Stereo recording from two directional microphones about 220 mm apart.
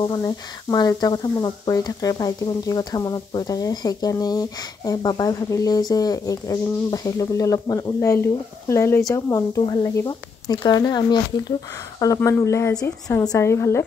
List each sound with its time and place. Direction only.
0.0 s speech: 20° left (ahead or behind)